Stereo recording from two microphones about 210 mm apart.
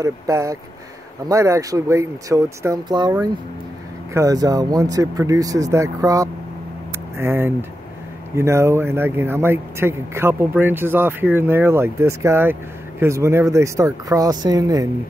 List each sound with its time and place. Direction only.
0.0 s speech: 15° right (ahead or behind)